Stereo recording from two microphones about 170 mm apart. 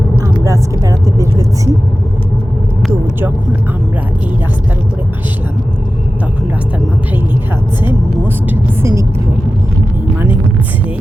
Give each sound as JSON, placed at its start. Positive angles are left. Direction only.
{"t": 0.4, "sound": "speech", "side_deg": -20}
{"t": 8.4, "sound": "a woman's voice", "side_deg": -15}